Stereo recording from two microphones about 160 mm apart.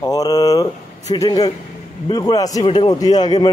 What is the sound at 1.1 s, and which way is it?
Speech, 25° left (ahead or behind).